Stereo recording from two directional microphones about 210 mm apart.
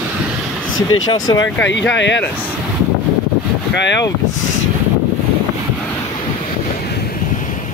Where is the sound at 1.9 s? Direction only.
60° left (ahead or behind).